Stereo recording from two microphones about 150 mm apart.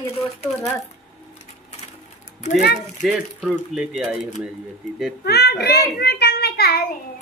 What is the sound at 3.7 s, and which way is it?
Speech, 5° right (ahead or behind).